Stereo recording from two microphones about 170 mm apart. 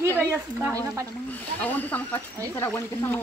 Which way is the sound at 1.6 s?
10° left (ahead or behind).